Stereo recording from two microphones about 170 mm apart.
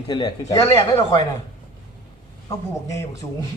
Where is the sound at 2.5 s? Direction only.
20° left (ahead or behind).